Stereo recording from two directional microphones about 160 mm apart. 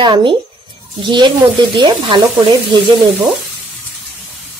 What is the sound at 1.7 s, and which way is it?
Speech, 25° right (ahead or behind).